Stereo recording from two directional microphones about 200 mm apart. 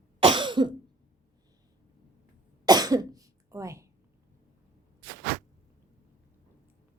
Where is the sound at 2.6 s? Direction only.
20° right (ahead or behind).